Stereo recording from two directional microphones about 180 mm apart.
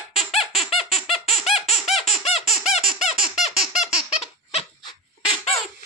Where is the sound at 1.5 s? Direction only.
35° left (ahead or behind).